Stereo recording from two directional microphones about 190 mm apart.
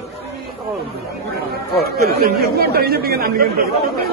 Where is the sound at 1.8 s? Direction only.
55° right (ahead or behind).